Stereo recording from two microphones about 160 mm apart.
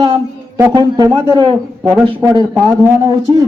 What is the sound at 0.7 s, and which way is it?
Speech, 25° right (ahead or behind).